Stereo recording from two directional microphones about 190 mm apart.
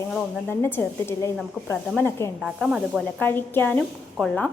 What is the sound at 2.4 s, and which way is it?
Speech, 5° right (ahead or behind).